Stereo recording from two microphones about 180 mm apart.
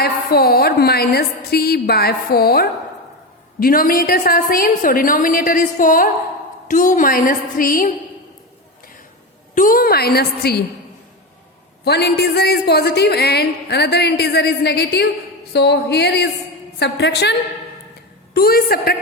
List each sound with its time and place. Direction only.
0.0 s a woman's voice: 60° left (ahead or behind)
9.6 s speech: 50° left (ahead or behind)
11.9 s speech: 65° left (ahead or behind)
18.3 s speech: 55° left (ahead or behind)